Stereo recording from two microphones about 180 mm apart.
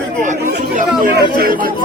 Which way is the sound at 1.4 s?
55° right (ahead or behind).